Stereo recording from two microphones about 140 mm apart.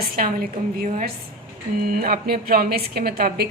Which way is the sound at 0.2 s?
90° right.